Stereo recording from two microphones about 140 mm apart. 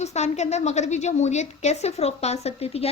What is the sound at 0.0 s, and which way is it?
A woman's voice, 55° left (ahead or behind).